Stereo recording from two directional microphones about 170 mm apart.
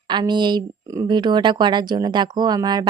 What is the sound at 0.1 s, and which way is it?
Speech, 25° right (ahead or behind).